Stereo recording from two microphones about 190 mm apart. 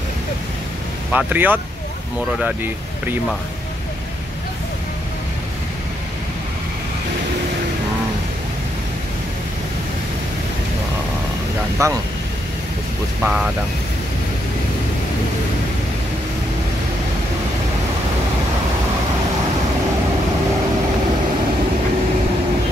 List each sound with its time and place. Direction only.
1.1 s speech: 10° right (ahead or behind)
11.8 s speech: 15° right (ahead or behind)
13.2 s speech: 5° right (ahead or behind)